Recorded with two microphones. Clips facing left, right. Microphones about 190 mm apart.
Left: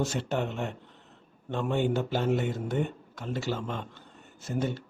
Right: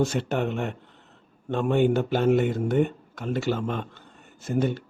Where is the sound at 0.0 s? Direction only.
55° right (ahead or behind).